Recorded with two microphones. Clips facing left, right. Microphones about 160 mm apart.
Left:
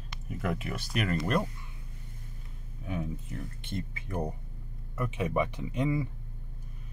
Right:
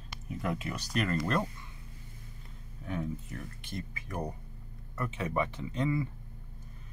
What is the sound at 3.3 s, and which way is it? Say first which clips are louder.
Speech: left 3 dB; 25° left (ahead or behind).